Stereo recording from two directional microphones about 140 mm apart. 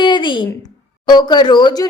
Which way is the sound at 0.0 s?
35° left (ahead or behind).